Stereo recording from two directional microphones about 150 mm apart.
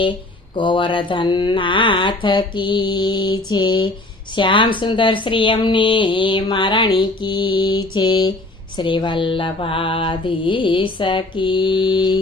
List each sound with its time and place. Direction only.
0.5 s speech: 30° left (ahead or behind)